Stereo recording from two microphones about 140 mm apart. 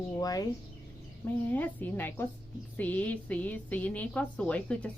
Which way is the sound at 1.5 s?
15° left (ahead or behind).